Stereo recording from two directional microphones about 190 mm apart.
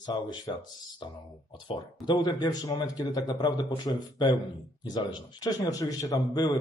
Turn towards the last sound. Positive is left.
turn(degrees=20)  # may be behind; listen again after turning